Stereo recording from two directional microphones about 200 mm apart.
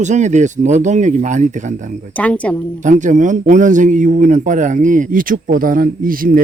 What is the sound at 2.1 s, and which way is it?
Speech, 5° left (ahead or behind).